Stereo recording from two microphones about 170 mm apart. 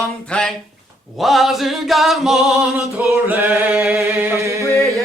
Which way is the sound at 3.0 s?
15° right (ahead or behind).